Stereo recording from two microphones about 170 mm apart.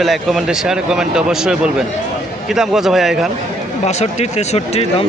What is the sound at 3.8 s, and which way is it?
Speech, 40° left (ahead or behind).